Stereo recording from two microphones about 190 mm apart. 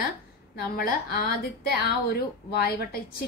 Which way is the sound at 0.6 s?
55° left (ahead or behind).